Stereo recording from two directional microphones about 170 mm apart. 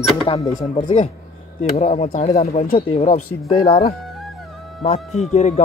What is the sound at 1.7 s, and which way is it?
Speech, 40° left (ahead or behind).